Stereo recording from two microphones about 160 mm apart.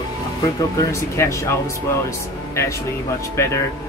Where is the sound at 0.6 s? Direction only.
20° left (ahead or behind).